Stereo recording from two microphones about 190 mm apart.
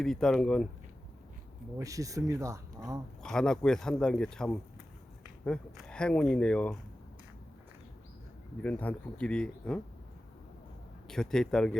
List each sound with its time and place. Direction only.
0.0 s speech: centre (ahead or behind)
1.8 s speech: 15° right (ahead or behind)
3.2 s speech: 5° left (ahead or behind)
8.6 s speech: 5° left (ahead or behind)
11.1 s speech: 5° left (ahead or behind)